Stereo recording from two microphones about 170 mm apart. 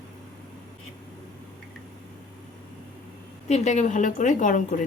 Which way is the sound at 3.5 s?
45° left (ahead or behind).